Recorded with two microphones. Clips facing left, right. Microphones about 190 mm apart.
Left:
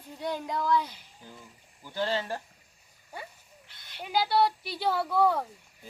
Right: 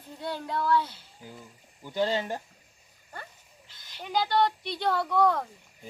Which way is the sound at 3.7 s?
60° left (ahead or behind).